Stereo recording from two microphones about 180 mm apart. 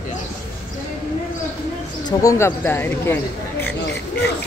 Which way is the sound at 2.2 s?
15° left (ahead or behind).